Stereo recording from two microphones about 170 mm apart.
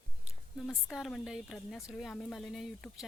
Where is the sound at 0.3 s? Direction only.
Centre (ahead or behind).